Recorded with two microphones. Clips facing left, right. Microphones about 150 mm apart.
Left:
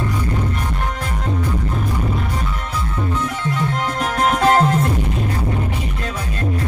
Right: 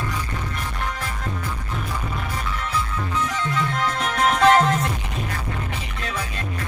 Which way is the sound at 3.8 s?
45° left (ahead or behind).